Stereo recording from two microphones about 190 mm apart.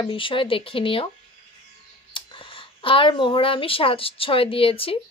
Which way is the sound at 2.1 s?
25° left (ahead or behind).